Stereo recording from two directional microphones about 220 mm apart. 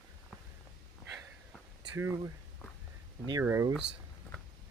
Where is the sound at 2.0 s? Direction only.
10° right (ahead or behind).